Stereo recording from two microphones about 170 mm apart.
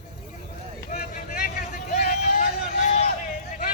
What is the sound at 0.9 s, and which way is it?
Vehicle, 60° left (ahead or behind).